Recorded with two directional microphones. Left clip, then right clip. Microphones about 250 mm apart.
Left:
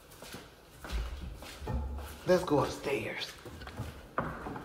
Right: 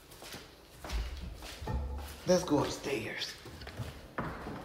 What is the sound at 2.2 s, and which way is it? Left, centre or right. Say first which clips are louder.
Speech: left 1 dB; centre.